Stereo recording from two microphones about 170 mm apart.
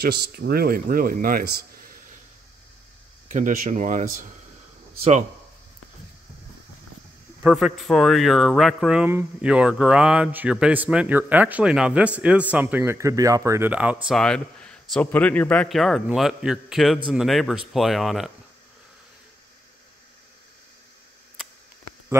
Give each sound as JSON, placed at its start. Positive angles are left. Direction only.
{"t": 0.0, "sound": "a man's voice", "side_deg": -70}
{"t": 3.3, "sound": "speech", "side_deg": -50}
{"t": 7.4, "sound": "a man's voice", "side_deg": -5}
{"t": 14.2, "sound": "a man's voice", "side_deg": 5}